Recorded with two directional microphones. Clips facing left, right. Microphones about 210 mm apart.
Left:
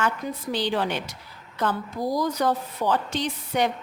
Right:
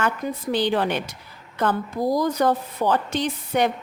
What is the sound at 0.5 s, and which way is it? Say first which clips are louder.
Speech: right 4 dB; 55° right (ahead or behind).